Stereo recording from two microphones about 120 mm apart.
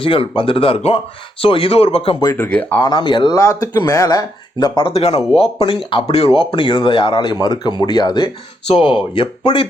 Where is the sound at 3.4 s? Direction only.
30° left (ahead or behind).